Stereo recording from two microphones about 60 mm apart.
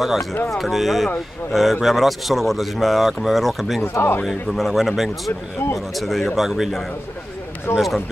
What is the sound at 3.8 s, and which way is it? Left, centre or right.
Speech, left.